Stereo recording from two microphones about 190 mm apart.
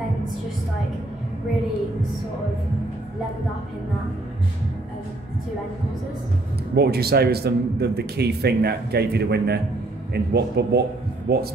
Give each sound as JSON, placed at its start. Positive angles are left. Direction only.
{"t": 6.7, "sound": "a man's voice", "side_deg": -55}